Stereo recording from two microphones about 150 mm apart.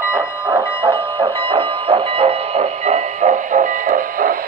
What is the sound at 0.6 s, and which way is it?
Train, 35° right (ahead or behind).